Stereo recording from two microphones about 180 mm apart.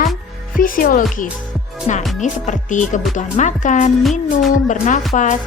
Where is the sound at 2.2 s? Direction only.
45° left (ahead or behind).